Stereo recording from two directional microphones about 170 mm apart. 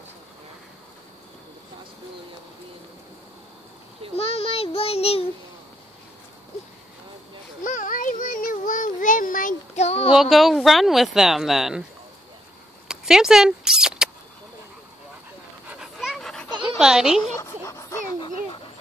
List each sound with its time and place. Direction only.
4.2 s child singing: 35° left (ahead or behind)
7.6 s a sound: 50° left (ahead or behind)
10.1 s speech: centre (ahead or behind)
12.8 s a sound: 5° right (ahead or behind)
15.7 s dog: centre (ahead or behind)
16.6 s a woman's voice: 5° right (ahead or behind)
17.4 s dog: 15° left (ahead or behind)